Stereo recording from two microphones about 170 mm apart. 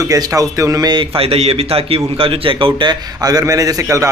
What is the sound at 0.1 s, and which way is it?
Speech, 20° right (ahead or behind).